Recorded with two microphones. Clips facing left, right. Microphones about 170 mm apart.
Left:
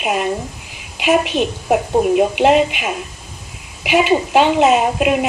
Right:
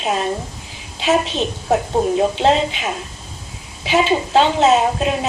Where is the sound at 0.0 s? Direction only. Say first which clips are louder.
Left 2 dB; 15° left (ahead or behind).